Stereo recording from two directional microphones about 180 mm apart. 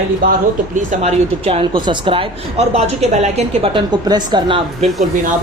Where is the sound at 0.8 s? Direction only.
35° right (ahead or behind).